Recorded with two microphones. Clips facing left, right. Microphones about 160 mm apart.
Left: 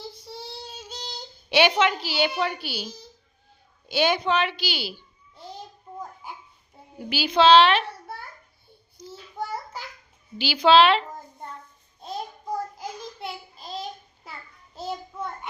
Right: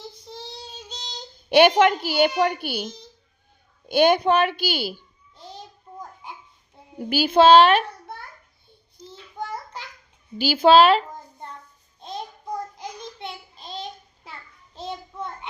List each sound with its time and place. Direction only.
0.3 s child singing: 5° left (ahead or behind)
0.9 s singing: 5° left (ahead or behind)
1.5 s a woman's voice: 50° right (ahead or behind)
7.0 s a woman's voice: 50° right (ahead or behind)
9.0 s a sound: 10° left (ahead or behind)
10.3 s a woman's voice: 45° right (ahead or behind)
12.7 s child singing: 5° left (ahead or behind)